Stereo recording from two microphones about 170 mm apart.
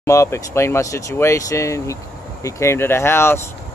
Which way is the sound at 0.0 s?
15° left (ahead or behind).